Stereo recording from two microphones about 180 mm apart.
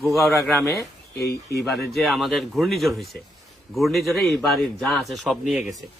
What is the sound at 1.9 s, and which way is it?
A man's voice, centre (ahead or behind).